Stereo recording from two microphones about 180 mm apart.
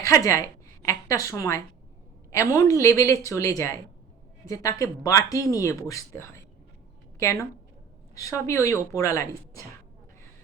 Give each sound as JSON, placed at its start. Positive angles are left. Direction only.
{"t": 0.0, "sound": "a woman's voice", "side_deg": 15}